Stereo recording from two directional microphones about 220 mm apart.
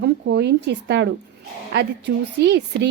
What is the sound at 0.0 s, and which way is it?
A woman's voice, 50° right (ahead or behind).